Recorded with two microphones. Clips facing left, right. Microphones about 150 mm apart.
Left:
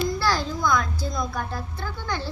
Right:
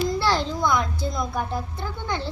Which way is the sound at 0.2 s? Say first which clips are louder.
Right 2 dB; 25° right (ahead or behind).